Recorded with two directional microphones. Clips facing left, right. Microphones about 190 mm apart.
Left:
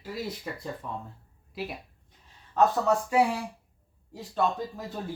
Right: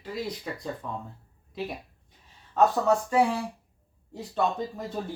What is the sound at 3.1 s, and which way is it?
Speech, 10° left (ahead or behind).